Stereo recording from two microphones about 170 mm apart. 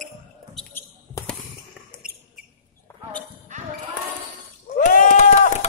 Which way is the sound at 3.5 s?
45° right (ahead or behind).